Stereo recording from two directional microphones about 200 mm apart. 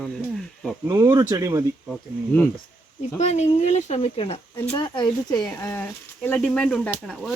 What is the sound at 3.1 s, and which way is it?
Speech, 35° left (ahead or behind).